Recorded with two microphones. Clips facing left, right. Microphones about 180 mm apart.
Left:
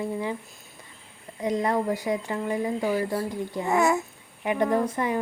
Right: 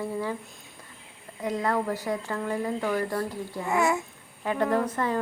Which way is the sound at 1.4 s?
15° left (ahead or behind).